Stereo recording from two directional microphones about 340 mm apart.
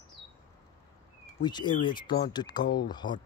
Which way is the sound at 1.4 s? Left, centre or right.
Centre.